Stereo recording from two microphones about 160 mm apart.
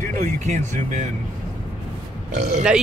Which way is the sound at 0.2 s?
50° right (ahead or behind).